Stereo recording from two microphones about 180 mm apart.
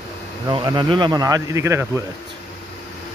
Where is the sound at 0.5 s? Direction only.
25° right (ahead or behind).